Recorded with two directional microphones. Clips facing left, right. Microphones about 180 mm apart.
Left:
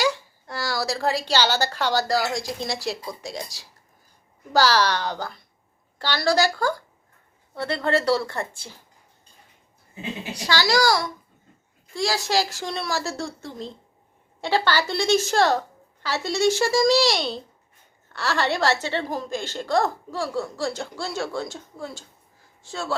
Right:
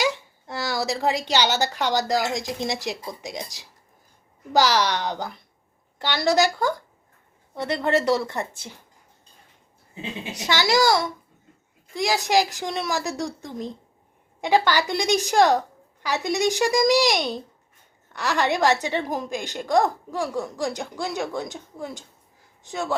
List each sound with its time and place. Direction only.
0.0 s a woman's voice: 20° right (ahead or behind)
9.9 s a child's voice: 20° right (ahead or behind)